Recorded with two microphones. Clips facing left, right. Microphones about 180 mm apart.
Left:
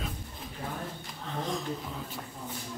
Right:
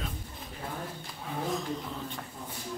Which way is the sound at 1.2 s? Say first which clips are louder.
Right 1 dB; 5° right (ahead or behind).